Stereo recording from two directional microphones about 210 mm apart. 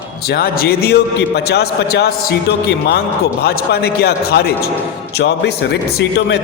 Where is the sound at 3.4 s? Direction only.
50° left (ahead or behind).